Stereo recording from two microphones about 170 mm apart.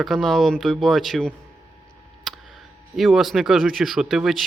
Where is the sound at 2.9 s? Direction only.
Centre (ahead or behind).